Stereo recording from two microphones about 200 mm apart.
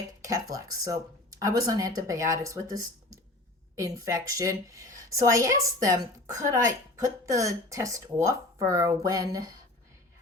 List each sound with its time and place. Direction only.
0.2 s a woman's voice: 15° right (ahead or behind)